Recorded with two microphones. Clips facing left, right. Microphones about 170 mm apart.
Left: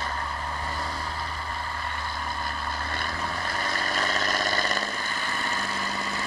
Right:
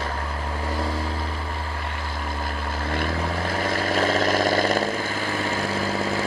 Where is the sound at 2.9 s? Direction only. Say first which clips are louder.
Right 7 dB; 90° right.